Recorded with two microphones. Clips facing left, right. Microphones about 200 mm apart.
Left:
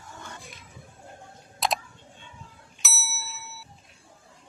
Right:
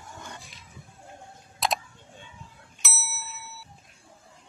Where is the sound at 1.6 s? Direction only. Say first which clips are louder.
Even; centre (ahead or behind).